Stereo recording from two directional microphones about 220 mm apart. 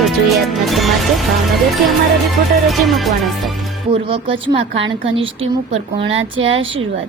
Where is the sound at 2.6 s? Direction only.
Centre (ahead or behind).